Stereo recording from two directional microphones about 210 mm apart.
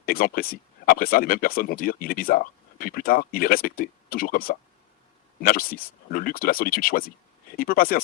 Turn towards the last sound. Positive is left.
turn(degrees=45)  # may be behind; listen again after turning